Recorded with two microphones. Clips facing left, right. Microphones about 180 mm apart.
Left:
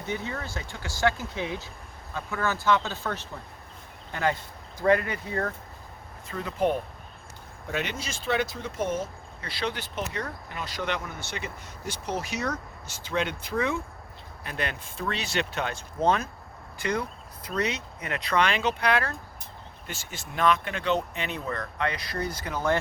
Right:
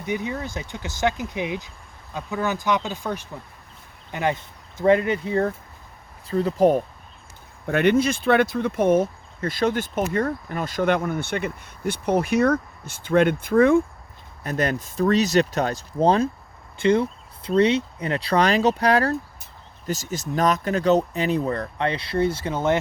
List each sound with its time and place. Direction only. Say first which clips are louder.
0.0 s speech: right 5 dB; 15° right (ahead or behind); by 6.8 s 40° right (ahead or behind)
7.7 s speech: right 14 dB; 55° right (ahead or behind)
14.4 s speech: right 9 dB; 40° right (ahead or behind); by 22.8 s 25° right (ahead or behind)